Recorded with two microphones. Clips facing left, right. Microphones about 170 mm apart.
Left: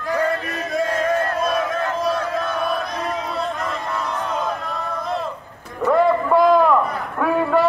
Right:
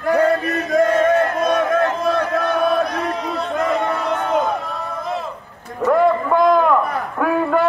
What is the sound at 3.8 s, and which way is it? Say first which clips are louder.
Crowd: right 5 dB; 65° right (ahead or behind).